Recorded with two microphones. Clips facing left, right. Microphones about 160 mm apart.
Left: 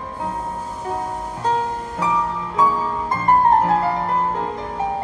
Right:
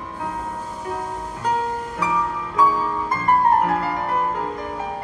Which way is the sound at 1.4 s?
30° left (ahead or behind).